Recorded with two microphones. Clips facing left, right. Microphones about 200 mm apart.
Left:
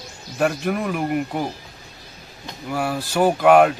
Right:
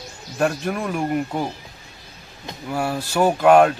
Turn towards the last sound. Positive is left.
turn(degrees=5)  # may be behind; listen again after turning